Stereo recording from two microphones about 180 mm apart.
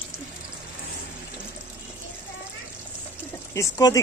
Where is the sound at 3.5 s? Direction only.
20° left (ahead or behind).